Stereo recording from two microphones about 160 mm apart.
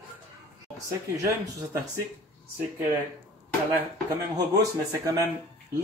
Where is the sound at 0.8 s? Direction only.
20° right (ahead or behind).